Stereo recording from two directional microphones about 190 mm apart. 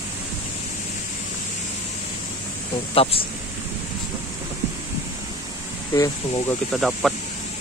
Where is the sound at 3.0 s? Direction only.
30° left (ahead or behind).